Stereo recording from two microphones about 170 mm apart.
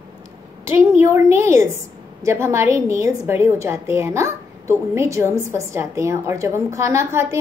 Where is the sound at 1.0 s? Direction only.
15° right (ahead or behind).